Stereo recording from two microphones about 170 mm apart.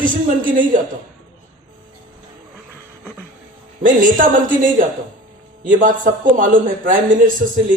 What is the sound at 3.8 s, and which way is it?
A man's voice, 50° right (ahead or behind).